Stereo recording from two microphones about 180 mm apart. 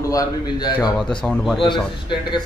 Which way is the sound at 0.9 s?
Centre (ahead or behind).